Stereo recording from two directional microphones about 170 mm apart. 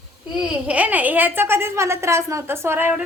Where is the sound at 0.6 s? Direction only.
10° right (ahead or behind).